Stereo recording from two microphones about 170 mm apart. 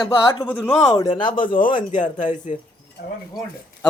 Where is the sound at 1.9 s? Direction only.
45° left (ahead or behind).